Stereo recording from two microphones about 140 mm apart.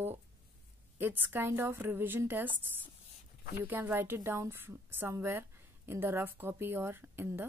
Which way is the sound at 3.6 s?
15° right (ahead or behind).